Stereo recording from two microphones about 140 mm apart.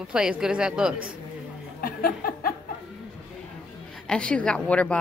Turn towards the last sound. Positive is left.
turn(degrees=10)  # may be behind; listen again after turning